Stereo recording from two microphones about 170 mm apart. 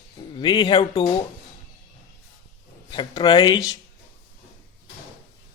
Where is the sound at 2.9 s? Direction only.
25° left (ahead or behind).